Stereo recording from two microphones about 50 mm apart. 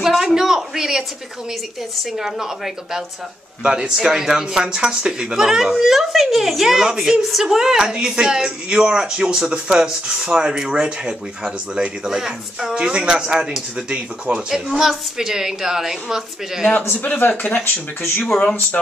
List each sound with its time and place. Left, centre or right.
0.0 s a sound: centre
2.1 s speech: centre
14.7 s speech: centre
17.4 s speech: left